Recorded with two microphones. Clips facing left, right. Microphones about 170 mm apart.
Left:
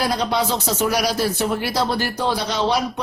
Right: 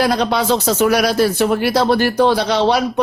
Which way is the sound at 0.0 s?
65° right (ahead or behind).